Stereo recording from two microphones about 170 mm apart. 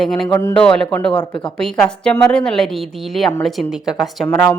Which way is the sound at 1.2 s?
30° left (ahead or behind).